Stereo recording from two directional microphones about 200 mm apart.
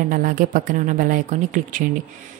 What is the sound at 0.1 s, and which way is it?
A woman's voice, 40° right (ahead or behind).